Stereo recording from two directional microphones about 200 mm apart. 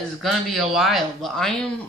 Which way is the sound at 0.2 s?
Centre (ahead or behind).